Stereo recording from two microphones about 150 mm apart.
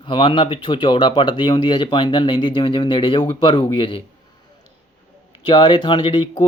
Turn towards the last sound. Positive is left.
turn(degrees=30)  # may be behind; listen again after turning